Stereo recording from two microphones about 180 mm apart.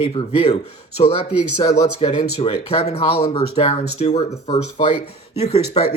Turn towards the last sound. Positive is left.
turn(degrees=35)  # may be behind; listen again after turning